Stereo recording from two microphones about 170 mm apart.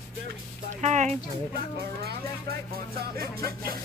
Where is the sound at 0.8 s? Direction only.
40° right (ahead or behind).